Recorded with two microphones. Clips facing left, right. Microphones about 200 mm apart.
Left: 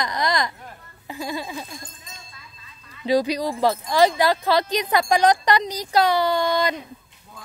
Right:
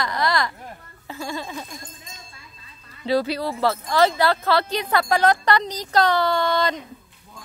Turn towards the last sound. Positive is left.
turn(degrees=10)  # may be behind; listen again after turning